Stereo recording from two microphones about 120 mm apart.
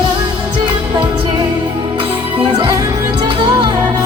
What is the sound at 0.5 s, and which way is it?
Music, 35° right (ahead or behind).